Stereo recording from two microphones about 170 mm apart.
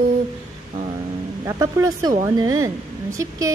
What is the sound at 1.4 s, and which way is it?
Speech, 20° right (ahead or behind).